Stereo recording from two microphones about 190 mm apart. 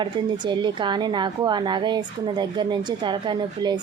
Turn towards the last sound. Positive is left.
turn(degrees=-25)  # may be behind; listen again after turning